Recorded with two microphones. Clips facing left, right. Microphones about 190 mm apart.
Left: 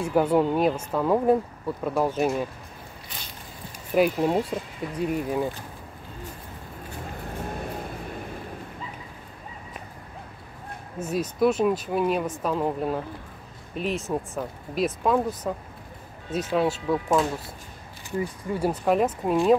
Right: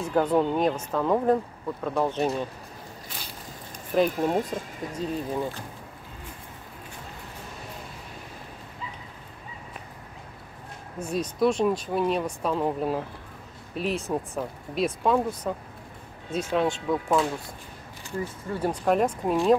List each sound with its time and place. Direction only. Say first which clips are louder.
0.0 s speech: left 2 dB; 10° left (ahead or behind)
3.9 s speech: left 2 dB; 10° left (ahead or behind)
7.2 s vehicle: left 8 dB; 55° left (ahead or behind)
11.0 s speech: left 1 dB; 5° left (ahead or behind)
16.5 s speech: left 1 dB; 5° left (ahead or behind)